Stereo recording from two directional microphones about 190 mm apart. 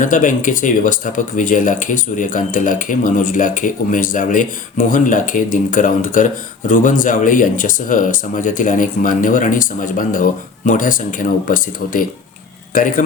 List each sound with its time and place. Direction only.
0.0 s speech: 45° left (ahead or behind)